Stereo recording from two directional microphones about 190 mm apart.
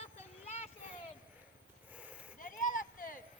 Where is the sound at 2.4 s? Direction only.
45° left (ahead or behind).